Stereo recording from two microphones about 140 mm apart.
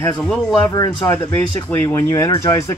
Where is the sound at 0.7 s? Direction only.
30° left (ahead or behind).